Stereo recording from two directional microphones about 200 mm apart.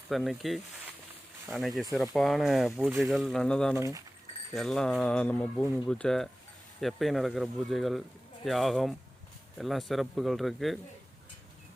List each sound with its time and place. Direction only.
0.1 s speech: centre (ahead or behind)
3.1 s speech: centre (ahead or behind)
3.8 s speech: 15° right (ahead or behind)
4.5 s speech: 5° left (ahead or behind)